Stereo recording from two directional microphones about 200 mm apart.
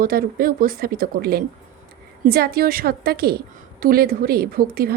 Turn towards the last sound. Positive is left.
turn(degrees=-50)  # may be behind; listen again after turning